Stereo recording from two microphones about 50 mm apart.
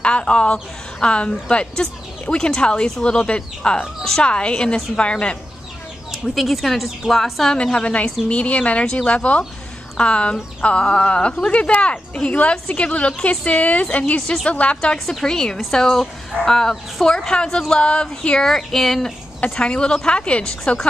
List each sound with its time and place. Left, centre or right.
0.0 s a woman's voice: left
3.8 s speech: centre
4.2 s a woman's voice: left
6.3 s a woman's voice: centre
7.5 s a woman's voice: left
15.0 s speech: centre
19.5 s a woman's voice: centre